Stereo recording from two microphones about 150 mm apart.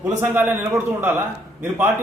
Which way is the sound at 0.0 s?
15° right (ahead or behind).